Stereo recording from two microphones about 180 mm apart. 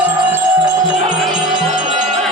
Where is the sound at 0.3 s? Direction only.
10° right (ahead or behind).